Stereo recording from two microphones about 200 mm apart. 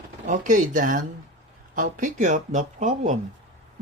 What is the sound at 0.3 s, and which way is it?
Speech, 40° right (ahead or behind).